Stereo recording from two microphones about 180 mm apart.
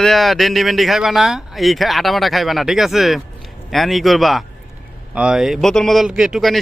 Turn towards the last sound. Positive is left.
turn(degrees=0)  # may be behind; listen again after turning